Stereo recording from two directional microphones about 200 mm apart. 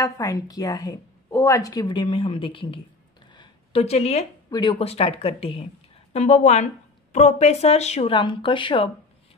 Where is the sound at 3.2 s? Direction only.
25° left (ahead or behind).